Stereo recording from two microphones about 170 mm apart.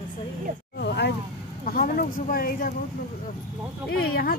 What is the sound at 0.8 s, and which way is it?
Vehicle, 75° left (ahead or behind).